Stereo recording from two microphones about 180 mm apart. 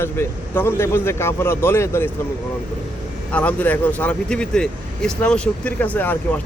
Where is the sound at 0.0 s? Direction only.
15° left (ahead or behind).